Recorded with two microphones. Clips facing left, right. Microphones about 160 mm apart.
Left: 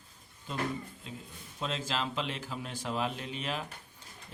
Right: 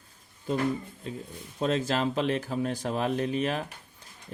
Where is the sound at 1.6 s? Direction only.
45° right (ahead or behind).